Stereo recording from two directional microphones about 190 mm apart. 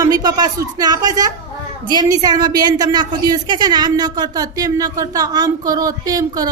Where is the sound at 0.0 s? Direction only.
20° right (ahead or behind).